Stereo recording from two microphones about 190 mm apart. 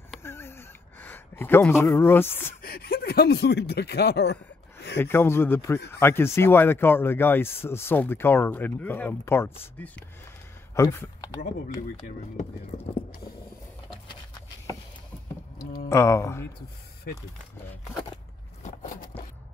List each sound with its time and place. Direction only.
0.2 s a sound: 10° left (ahead or behind)
2.6 s speech: 50° left (ahead or behind)
4.9 s speech: 10° left (ahead or behind)
12.7 s speech: 40° left (ahead or behind)
15.9 s speech: 15° left (ahead or behind)